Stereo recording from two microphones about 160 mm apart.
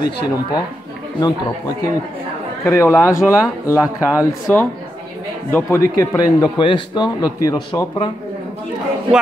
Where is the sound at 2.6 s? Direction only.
15° left (ahead or behind).